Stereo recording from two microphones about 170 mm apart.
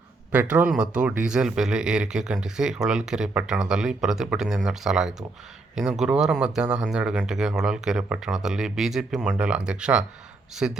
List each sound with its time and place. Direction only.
0.3 s a man's voice: 10° right (ahead or behind)